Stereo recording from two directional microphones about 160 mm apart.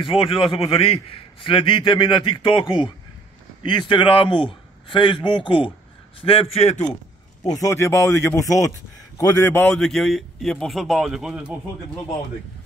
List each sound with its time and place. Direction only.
0.0 s a man's voice: 35° left (ahead or behind)
3.6 s a man's voice: 30° left (ahead or behind)
7.4 s speech: 20° left (ahead or behind)
9.8 s speech: centre (ahead or behind)